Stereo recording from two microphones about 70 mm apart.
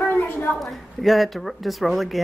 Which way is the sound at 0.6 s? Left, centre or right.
Centre.